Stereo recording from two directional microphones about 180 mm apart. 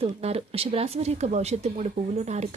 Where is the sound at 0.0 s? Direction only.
35° right (ahead or behind).